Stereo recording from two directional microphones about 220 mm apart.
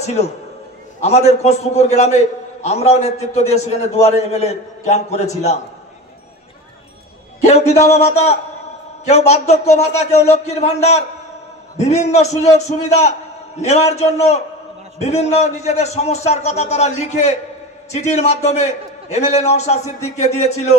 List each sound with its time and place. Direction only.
0.0 s a man's voice: 30° left (ahead or behind)
7.4 s a man's voice: 30° left (ahead or behind)